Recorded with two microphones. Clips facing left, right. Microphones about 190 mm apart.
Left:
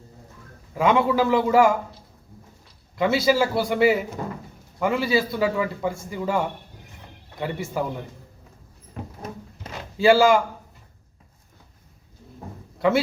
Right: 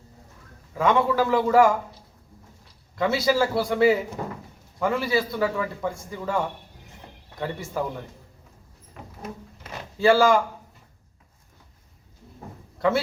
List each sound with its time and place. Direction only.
0.8 s a man's voice: 10° left (ahead or behind)
2.9 s a man's voice: 5° left (ahead or behind)
10.0 s a man's voice: 5° left (ahead or behind)